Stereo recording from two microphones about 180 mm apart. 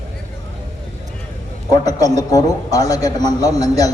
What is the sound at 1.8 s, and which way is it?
A man's voice, 20° left (ahead or behind).